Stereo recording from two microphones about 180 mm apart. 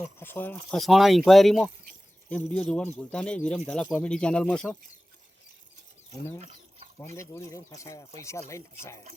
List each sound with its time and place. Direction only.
0.0 s speech: 10° left (ahead or behind)
0.7 s speech: centre (ahead or behind)
6.4 s a sound: 40° right (ahead or behind)
7.2 s speech: 15° left (ahead or behind)